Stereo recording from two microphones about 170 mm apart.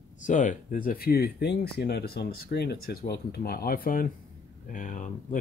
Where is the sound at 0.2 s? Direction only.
45° left (ahead or behind).